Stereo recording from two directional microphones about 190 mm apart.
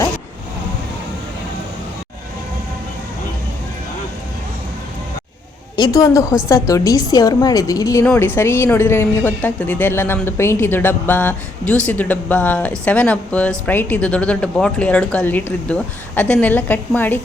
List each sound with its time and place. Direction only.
5.7 s a woman's voice: 20° left (ahead or behind)